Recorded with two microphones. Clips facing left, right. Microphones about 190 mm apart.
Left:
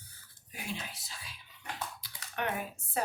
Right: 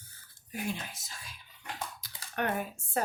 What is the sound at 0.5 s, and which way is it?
Speech, 50° right (ahead or behind).